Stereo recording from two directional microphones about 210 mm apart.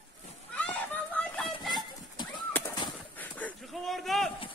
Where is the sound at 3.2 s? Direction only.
5° left (ahead or behind).